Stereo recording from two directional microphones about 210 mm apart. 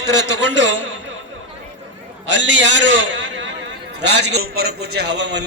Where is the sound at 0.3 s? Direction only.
60° right (ahead or behind).